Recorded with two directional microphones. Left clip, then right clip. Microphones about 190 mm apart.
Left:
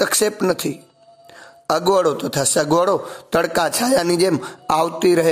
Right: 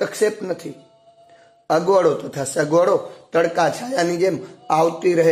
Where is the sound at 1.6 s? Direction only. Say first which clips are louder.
Even; 30° left (ahead or behind).